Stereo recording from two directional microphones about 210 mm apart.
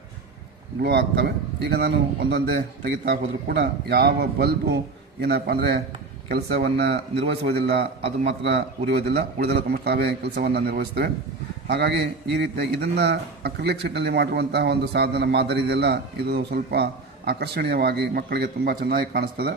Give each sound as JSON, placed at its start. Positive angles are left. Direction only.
{"t": 0.8, "sound": "a man's voice", "side_deg": -50}